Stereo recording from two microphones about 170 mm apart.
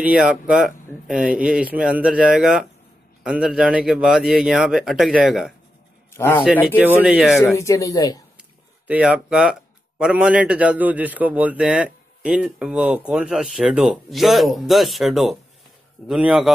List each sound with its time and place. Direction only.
0.0 s speech: 5° right (ahead or behind)
6.1 s a man's voice: 15° left (ahead or behind)
6.8 s speech: 10° right (ahead or behind)
7.3 s speech: 15° left (ahead or behind)
8.8 s speech: 5° right (ahead or behind)